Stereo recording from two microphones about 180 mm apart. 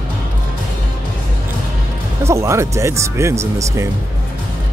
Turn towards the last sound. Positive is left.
turn(degrees=-15)  # may be behind; listen again after turning